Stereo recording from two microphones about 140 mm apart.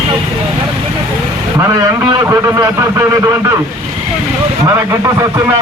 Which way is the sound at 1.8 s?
25° right (ahead or behind).